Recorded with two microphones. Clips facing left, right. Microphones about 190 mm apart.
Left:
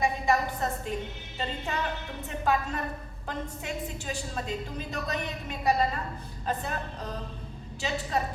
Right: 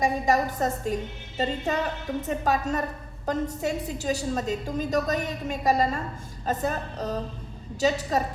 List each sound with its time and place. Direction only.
0.0 s a woman's voice: 40° right (ahead or behind)